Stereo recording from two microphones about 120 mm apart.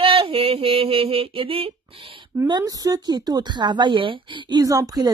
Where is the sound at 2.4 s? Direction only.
35° right (ahead or behind).